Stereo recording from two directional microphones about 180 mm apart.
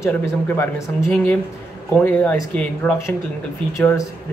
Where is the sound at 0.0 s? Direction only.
15° left (ahead or behind).